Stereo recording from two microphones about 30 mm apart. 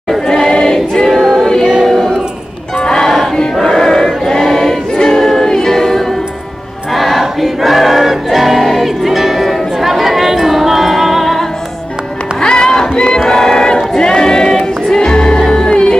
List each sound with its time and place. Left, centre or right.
0.3 s choir: centre
1.0 s choir: centre
1.6 s music: right
2.8 s music: left
3.6 s choir: centre
4.9 s music: centre
7.4 s choir: centre
8.7 s music: centre
12.4 s music: left
12.9 s crowd: left
13.3 s choir: centre
13.9 s a sound: left
15.0 s music: left